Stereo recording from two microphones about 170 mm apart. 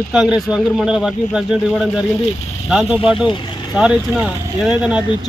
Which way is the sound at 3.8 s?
5° right (ahead or behind).